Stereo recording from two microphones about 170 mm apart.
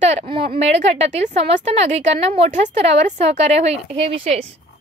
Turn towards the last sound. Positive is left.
turn(degrees=-35)  # may be behind; listen again after turning